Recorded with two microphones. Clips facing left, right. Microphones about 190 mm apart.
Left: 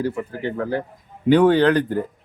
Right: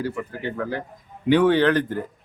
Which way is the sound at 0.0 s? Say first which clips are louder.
Left 3 dB; 35° left (ahead or behind).